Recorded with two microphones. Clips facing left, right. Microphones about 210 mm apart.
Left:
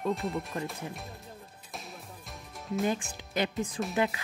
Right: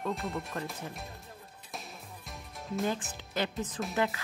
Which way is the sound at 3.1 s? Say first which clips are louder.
Left 2 dB; 15° left (ahead or behind).